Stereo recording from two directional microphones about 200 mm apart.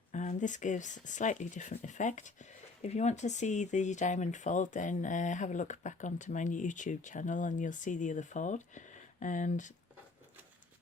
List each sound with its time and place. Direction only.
0.1 s speech: 40° left (ahead or behind)